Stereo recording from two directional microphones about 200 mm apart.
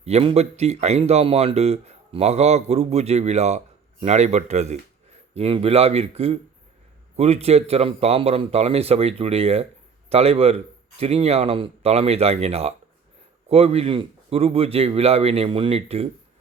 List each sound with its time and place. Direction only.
0.0 s speech: 30° right (ahead or behind)